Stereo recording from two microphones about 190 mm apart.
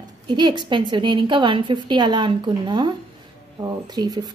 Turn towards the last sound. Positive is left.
turn(degrees=-20)  # may be behind; listen again after turning